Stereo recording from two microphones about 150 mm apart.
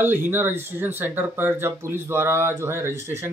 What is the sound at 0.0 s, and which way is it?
Speech, 15° right (ahead or behind).